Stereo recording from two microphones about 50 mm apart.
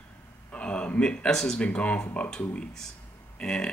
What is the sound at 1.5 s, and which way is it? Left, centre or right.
Speech, left.